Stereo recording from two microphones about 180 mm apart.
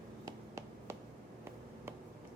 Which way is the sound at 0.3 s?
20° right (ahead or behind).